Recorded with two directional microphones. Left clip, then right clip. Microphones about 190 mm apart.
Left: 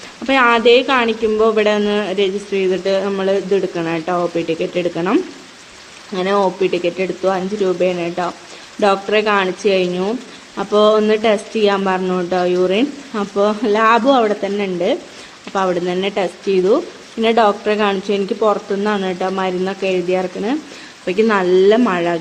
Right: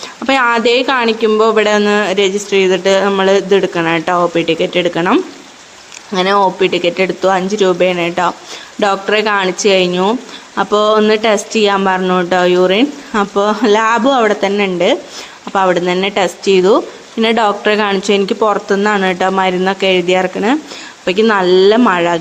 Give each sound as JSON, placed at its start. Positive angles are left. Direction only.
{"t": 0.3, "sound": "speech", "side_deg": -10}
{"t": 21.0, "sound": "speech", "side_deg": -5}